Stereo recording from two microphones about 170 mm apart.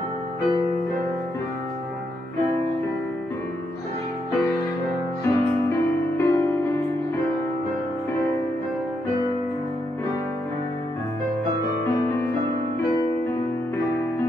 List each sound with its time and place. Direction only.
5.2 s music: 15° left (ahead or behind)